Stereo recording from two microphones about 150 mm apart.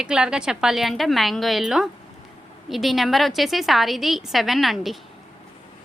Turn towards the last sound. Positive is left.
turn(degrees=0)  # may be behind; listen again after turning